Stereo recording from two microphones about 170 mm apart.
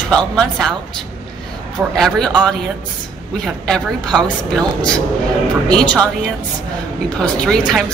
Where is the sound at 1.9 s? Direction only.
5° left (ahead or behind).